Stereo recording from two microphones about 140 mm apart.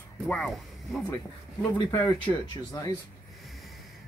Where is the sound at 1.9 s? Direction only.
20° left (ahead or behind).